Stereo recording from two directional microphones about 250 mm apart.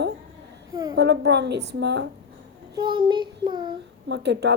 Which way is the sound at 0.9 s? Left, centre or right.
Right.